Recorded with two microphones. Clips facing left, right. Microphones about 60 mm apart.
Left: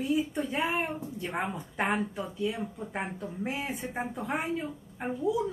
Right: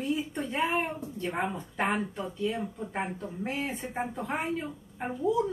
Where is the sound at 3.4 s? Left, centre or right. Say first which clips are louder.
Right 1 dB; centre.